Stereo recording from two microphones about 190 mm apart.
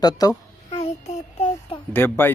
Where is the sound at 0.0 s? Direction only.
20° left (ahead or behind).